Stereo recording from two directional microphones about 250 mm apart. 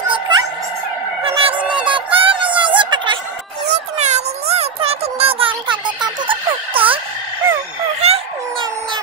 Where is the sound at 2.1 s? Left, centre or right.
Right.